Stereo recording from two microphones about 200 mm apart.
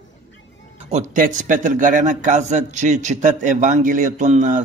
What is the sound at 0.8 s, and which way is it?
A man's voice, 40° right (ahead or behind).